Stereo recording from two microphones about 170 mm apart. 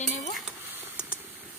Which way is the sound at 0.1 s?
45° left (ahead or behind).